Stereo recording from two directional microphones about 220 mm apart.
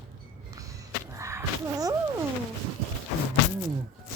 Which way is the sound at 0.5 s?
15° right (ahead or behind).